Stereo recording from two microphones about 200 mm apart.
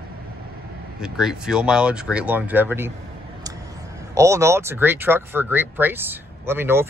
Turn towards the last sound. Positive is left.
turn(degrees=-10)  # may be behind; listen again after turning